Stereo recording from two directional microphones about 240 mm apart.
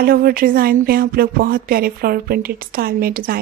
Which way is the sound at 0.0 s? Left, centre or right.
Right.